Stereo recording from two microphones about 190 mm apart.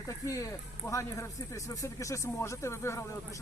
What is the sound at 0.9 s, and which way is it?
Speech, 15° left (ahead or behind).